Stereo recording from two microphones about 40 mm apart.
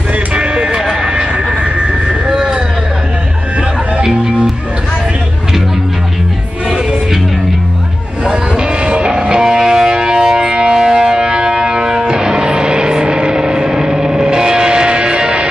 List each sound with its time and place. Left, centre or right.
0.3 s music: right
1.0 s vehicle: right
2.3 s a sound: centre
8.3 s music: right